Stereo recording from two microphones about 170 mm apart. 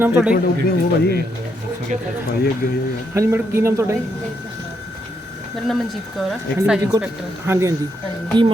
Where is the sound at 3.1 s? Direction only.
15° right (ahead or behind).